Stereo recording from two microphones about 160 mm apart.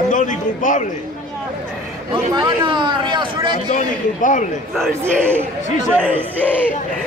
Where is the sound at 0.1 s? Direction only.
50° left (ahead or behind).